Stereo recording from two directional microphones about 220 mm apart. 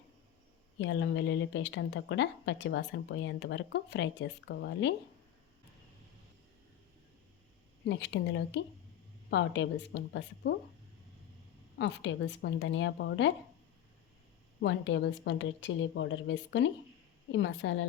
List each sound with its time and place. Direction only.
0.8 s a woman's voice: 55° left (ahead or behind)
7.9 s a woman's voice: 50° left (ahead or behind)
11.8 s a woman's voice: 55° left (ahead or behind)
14.6 s a woman's voice: 55° left (ahead or behind)